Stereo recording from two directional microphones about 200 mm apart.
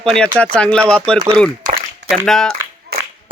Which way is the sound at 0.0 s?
5° left (ahead or behind).